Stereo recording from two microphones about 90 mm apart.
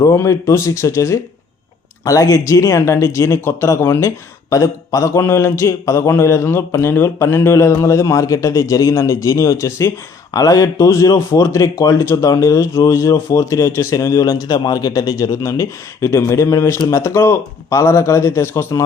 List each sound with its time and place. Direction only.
0.0 s a man's voice: 35° left (ahead or behind)
4.4 s a man's voice: 40° left (ahead or behind)